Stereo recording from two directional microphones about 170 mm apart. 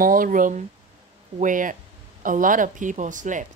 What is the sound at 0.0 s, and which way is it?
Speech, 55° right (ahead or behind).